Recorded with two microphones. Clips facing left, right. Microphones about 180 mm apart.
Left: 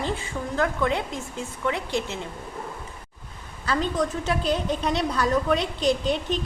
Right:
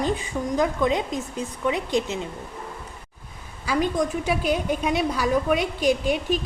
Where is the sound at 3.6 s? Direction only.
10° right (ahead or behind).